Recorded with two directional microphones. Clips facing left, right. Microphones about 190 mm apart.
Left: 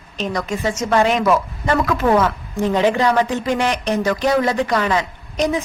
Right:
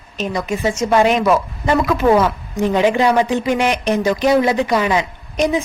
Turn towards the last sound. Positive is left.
turn(degrees=-15)  # may be behind; listen again after turning